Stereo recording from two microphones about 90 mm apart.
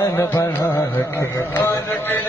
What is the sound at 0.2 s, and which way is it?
Music, 35° left (ahead or behind).